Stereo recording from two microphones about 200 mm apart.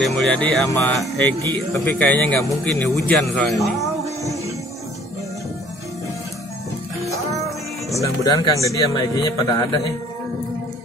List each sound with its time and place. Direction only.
0.0 s a man's voice: centre (ahead or behind)
7.9 s speech: 15° left (ahead or behind)